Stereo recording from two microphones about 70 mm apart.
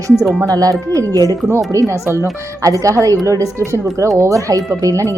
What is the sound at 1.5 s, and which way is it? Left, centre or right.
Speech, right.